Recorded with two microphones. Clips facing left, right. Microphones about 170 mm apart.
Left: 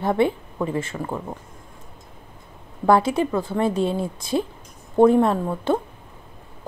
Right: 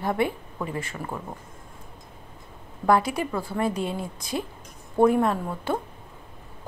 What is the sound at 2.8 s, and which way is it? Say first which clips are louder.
Speech: left 4 dB; 25° left (ahead or behind).